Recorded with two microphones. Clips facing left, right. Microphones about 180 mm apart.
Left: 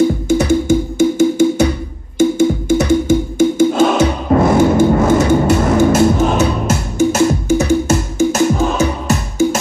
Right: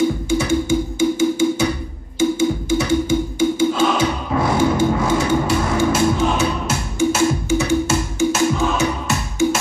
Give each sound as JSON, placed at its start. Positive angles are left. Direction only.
{"t": 0.3, "sound": "music", "side_deg": 45}